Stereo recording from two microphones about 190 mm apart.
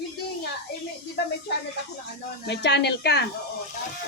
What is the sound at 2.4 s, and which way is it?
Speech, 60° left (ahead or behind).